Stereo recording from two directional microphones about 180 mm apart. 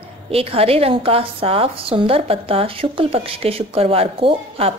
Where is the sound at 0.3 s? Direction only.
30° right (ahead or behind).